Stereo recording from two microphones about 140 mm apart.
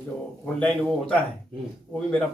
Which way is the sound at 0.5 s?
10° left (ahead or behind).